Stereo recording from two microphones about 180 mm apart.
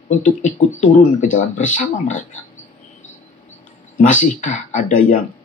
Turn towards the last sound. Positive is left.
turn(degrees=45)  # may be behind; listen again after turning